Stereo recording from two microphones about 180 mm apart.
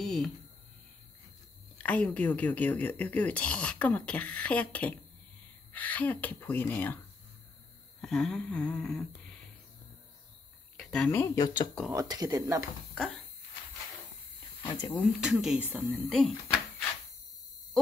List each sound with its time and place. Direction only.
0.0 s a sound: centre (ahead or behind)
1.8 s speech: 10° left (ahead or behind)
8.0 s a woman's voice: 5° left (ahead or behind)
10.8 s speech: 5° left (ahead or behind); by 11.7 s 20° left (ahead or behind)
11.9 s speech: 20° right (ahead or behind)
14.7 s speech: 20° left (ahead or behind)
15.1 s a woman's voice: 5° right (ahead or behind)